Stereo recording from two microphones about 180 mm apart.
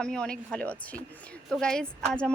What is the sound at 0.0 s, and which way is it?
Speech, 5° left (ahead or behind).